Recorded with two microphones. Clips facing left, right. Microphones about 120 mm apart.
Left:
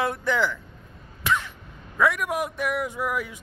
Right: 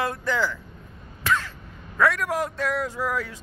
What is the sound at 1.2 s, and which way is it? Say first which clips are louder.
Crow: right 1 dB; 20° left (ahead or behind).